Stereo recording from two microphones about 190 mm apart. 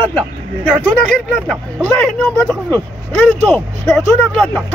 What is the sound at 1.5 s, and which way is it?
Speech, centre (ahead or behind).